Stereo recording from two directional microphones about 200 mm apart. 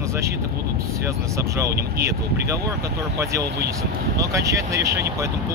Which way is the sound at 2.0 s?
15° right (ahead or behind).